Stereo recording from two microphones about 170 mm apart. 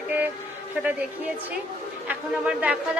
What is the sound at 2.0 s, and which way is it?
Speech, 5° right (ahead or behind).